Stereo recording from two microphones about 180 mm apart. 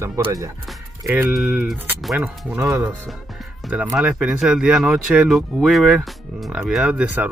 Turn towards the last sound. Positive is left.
turn(degrees=-10)  # may be behind; listen again after turning